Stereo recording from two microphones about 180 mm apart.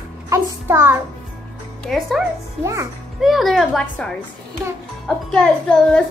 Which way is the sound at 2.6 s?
15° right (ahead or behind).